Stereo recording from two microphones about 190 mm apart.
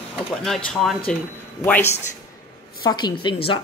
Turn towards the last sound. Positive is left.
turn(degrees=25)  # may be behind; listen again after turning